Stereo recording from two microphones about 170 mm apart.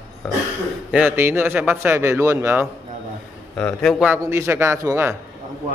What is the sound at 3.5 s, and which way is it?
Speech, 5° left (ahead or behind).